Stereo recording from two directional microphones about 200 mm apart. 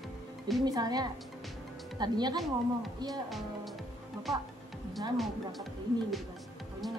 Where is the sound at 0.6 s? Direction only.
20° right (ahead or behind).